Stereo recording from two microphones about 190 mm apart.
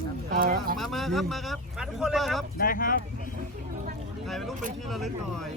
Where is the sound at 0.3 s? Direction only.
50° right (ahead or behind).